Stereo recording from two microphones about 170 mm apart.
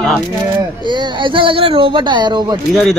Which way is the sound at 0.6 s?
25° right (ahead or behind).